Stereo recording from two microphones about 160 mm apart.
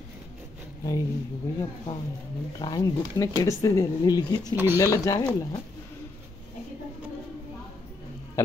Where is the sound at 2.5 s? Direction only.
25° left (ahead or behind).